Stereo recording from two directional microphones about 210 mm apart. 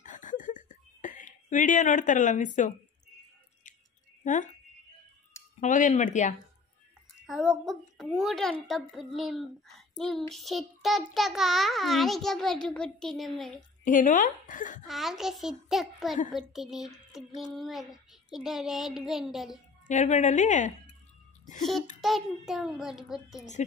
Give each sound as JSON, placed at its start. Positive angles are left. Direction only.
{"t": 0.0, "sound": "a sound", "side_deg": 35}
{"t": 4.2, "sound": "speech", "side_deg": 35}
{"t": 5.6, "sound": "speech", "side_deg": 35}
{"t": 7.2, "sound": "a woman's voice", "side_deg": 0}
{"t": 13.6, "sound": "speech", "side_deg": 40}
{"t": 14.9, "sound": "a woman's voice", "side_deg": 0}
{"t": 19.9, "sound": "speech", "side_deg": 35}
{"t": 22.0, "sound": "a woman's voice", "side_deg": 0}